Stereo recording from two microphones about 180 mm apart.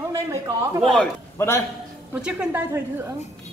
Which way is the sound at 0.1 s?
20° right (ahead or behind).